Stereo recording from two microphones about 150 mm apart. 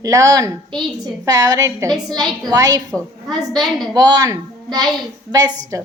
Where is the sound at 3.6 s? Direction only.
Centre (ahead or behind).